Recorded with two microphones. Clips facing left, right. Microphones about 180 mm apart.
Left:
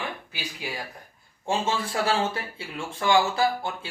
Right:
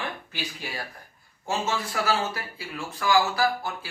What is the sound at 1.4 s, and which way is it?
Speech, 30° left (ahead or behind).